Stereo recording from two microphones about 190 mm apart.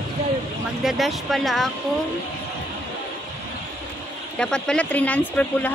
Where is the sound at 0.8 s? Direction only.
Centre (ahead or behind).